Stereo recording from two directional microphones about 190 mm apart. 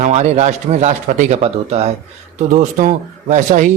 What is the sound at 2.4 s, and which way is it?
Speech, 40° right (ahead or behind).